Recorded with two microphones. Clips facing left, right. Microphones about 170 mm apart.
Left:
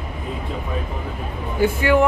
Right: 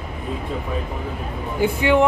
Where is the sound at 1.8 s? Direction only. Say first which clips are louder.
Right 1 dB; 20° right (ahead or behind).